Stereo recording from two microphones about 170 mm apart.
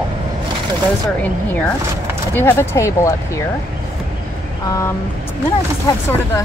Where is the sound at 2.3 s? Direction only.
15° left (ahead or behind).